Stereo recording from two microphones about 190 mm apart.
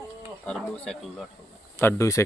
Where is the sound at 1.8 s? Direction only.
15° left (ahead or behind).